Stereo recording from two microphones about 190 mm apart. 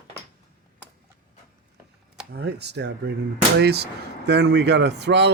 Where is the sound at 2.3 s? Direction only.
60° right (ahead or behind).